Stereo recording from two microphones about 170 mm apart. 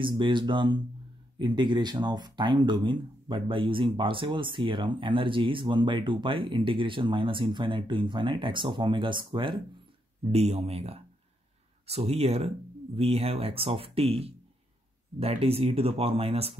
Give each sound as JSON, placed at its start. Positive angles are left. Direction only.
{"t": 0.0, "sound": "speech", "side_deg": -30}